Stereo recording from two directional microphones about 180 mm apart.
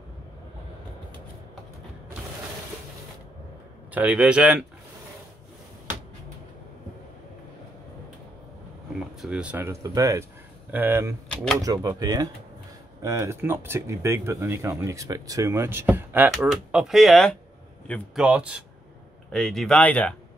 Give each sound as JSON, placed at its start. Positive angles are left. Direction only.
{"t": 3.9, "sound": "speech", "side_deg": -10}
{"t": 9.2, "sound": "speech", "side_deg": -5}